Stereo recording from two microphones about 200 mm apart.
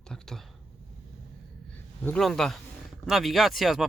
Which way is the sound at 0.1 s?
Centre (ahead or behind).